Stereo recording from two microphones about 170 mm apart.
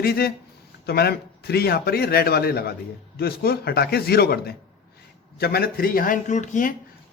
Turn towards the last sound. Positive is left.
turn(degrees=45)  # may be behind; listen again after turning